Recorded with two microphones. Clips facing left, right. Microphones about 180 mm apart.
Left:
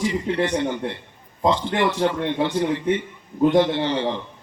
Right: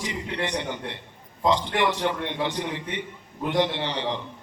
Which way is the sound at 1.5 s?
20° right (ahead or behind).